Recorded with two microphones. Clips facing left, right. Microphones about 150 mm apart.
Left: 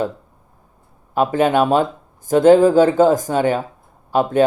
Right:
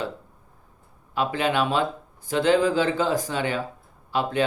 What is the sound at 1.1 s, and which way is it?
Speech, 45° left (ahead or behind).